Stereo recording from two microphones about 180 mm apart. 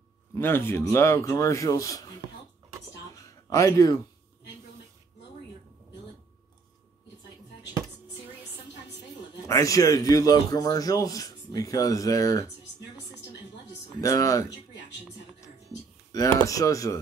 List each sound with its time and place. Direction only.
0.3 s a man's voice: 15° left (ahead or behind)
3.3 s speech: 20° left (ahead or behind)
9.5 s a man's voice: 20° left (ahead or behind)
14.0 s a man's voice: 15° left (ahead or behind)
16.1 s a man's voice: 20° left (ahead or behind)